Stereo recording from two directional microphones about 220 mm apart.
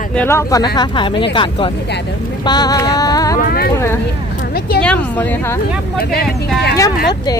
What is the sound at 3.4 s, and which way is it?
Speech, 40° left (ahead or behind).